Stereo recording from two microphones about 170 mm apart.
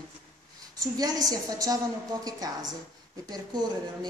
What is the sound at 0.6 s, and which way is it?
A woman's voice, 20° right (ahead or behind).